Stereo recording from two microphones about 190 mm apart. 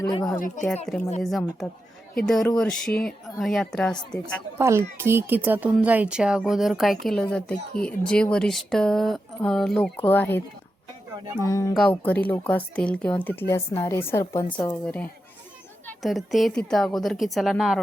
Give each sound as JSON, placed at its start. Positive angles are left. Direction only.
{"t": 0.0, "sound": "speech", "side_deg": 20}
{"t": 0.3, "sound": "speech", "side_deg": 45}
{"t": 0.9, "sound": "speech", "side_deg": 0}
{"t": 4.5, "sound": "a child's voice", "side_deg": -15}
{"t": 11.4, "sound": "speech", "side_deg": 15}
{"t": 11.7, "sound": "speech", "side_deg": 5}
{"t": 16.0, "sound": "speech", "side_deg": 0}